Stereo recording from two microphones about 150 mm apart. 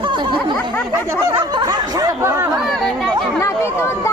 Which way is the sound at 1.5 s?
25° right (ahead or behind).